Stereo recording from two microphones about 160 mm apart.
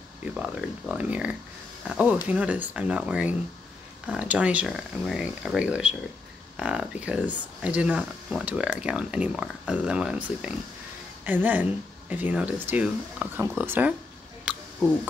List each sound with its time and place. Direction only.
0.2 s speech: 5° right (ahead or behind)